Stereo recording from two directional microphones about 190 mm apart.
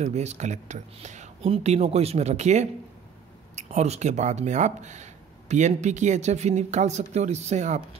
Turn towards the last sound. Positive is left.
turn(degrees=-40)  # may be behind; listen again after turning